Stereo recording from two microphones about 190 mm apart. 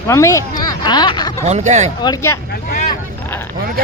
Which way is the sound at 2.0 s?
15° left (ahead or behind).